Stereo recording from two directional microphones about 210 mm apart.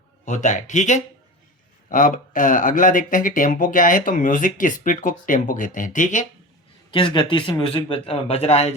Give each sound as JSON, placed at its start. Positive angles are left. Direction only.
{"t": 0.3, "sound": "speech", "side_deg": 35}
{"t": 6.9, "sound": "a man's voice", "side_deg": 25}